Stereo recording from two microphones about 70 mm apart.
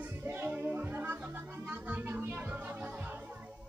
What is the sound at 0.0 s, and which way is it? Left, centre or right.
Music, right.